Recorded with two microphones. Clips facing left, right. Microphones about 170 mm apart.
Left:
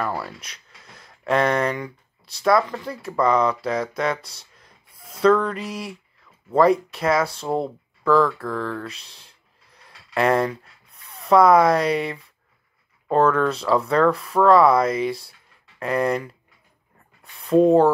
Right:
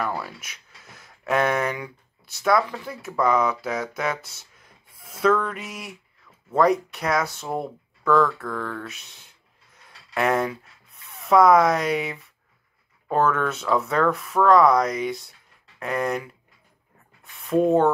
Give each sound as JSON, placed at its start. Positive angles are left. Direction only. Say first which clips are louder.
{"t": 0.1, "sound": "speech", "louder": "left 2 dB", "side_deg": -5}
{"t": 4.4, "sound": "gasp", "louder": "left 1 dB", "side_deg": -5}
{"t": 5.2, "sound": "speech", "louder": "left 4 dB", "side_deg": -5}
{"t": 5.6, "sound": "speech", "louder": "left 6 dB", "side_deg": 30}
{"t": 6.5, "sound": "speech", "louder": "left 3 dB", "side_deg": 0}
{"t": 7.3, "sound": "speech", "louder": "left 5 dB", "side_deg": 30}
{"t": 8.0, "sound": "speech", "louder": "left 2 dB", "side_deg": 0}
{"t": 8.9, "sound": "speech", "louder": "left 1 dB", "side_deg": 30}
{"t": 9.8, "sound": "a sound", "louder": "left 3 dB", "side_deg": 0}
{"t": 11.1, "sound": "speech", "louder": "left 1 dB", "side_deg": 0}
{"t": 17.6, "sound": "speech", "louder": "left 3 dB", "side_deg": 0}